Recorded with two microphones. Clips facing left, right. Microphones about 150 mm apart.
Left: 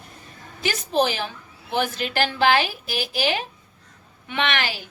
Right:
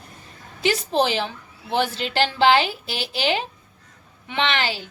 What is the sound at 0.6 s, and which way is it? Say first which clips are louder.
A woman's voice: right 1 dB; 30° right (ahead or behind).